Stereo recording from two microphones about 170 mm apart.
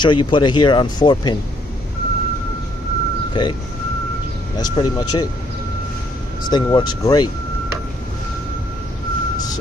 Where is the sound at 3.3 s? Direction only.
25° left (ahead or behind).